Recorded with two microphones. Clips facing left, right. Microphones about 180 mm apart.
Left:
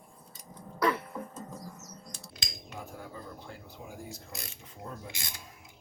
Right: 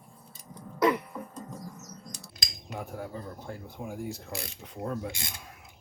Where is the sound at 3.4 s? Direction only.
50° right (ahead or behind); by 4.9 s 65° right (ahead or behind).